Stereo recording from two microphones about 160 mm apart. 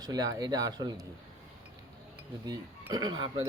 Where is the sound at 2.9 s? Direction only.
25° right (ahead or behind).